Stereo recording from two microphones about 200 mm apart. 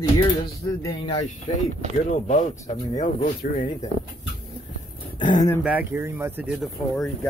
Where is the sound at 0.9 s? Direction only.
35° left (ahead or behind).